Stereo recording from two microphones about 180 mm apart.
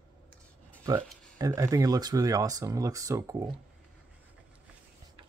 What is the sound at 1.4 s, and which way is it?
Speech, 15° right (ahead or behind).